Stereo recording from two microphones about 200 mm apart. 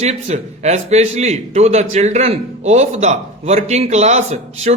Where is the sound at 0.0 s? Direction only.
30° right (ahead or behind).